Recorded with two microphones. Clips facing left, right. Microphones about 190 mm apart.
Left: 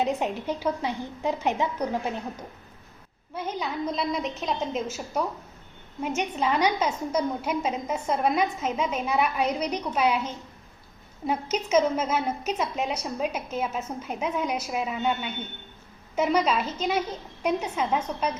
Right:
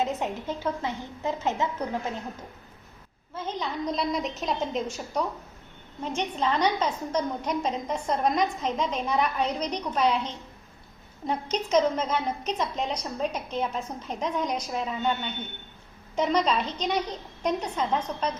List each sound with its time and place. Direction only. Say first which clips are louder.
0.0 s a woman's voice: left 2 dB; 15° left (ahead or behind)
3.3 s a woman's voice: left 1 dB; 10° left (ahead or behind)